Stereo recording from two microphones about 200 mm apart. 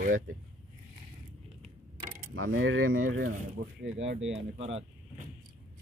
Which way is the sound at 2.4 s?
90° right.